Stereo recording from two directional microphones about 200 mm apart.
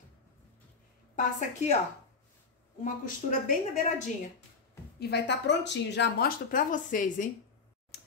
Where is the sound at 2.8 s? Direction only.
40° left (ahead or behind).